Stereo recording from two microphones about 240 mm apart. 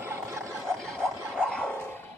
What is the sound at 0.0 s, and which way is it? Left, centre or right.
Snicker, centre.